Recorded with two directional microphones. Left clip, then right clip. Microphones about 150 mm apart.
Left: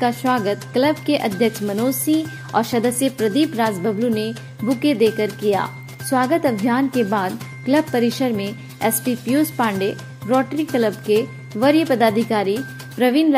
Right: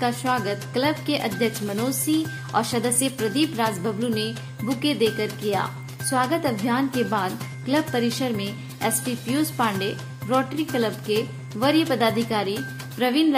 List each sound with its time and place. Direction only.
0.0 s speech: 20° left (ahead or behind)